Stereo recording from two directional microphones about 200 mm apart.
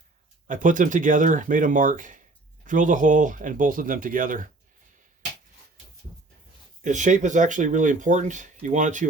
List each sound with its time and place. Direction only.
0.4 s speech: 40° right (ahead or behind)
6.8 s speech: 40° right (ahead or behind)